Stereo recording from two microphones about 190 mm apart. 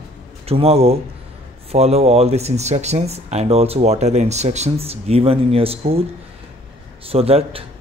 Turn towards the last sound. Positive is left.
turn(degrees=-30)  # may be behind; listen again after turning